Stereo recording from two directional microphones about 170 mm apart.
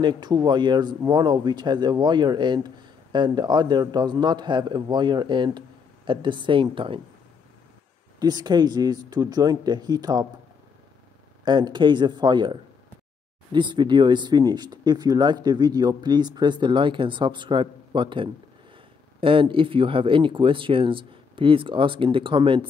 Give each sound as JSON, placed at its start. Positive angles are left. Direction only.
{"t": 0.0, "sound": "speech", "side_deg": -25}
{"t": 8.2, "sound": "speech", "side_deg": -25}
{"t": 11.4, "sound": "speech", "side_deg": -25}